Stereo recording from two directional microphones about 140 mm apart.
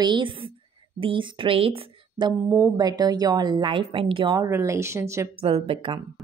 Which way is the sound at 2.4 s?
20° right (ahead or behind).